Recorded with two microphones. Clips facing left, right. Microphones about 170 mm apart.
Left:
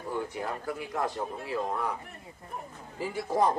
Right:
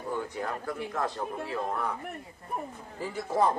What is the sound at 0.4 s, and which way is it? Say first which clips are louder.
Speech: right 1 dB; 10° left (ahead or behind).